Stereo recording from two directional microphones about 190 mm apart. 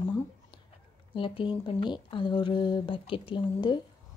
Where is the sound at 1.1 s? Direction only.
25° left (ahead or behind).